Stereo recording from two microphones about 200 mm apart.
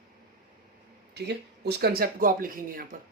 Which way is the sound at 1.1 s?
55° right (ahead or behind).